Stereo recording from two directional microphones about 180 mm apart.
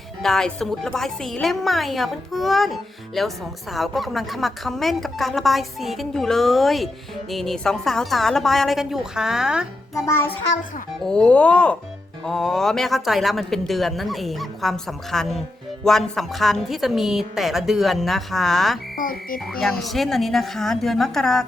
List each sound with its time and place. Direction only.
0.2 s a woman's voice: centre (ahead or behind)
11.0 s a woman's voice: 5° left (ahead or behind)
18.9 s frog: 50° left (ahead or behind)
19.8 s a woman's voice: centre (ahead or behind)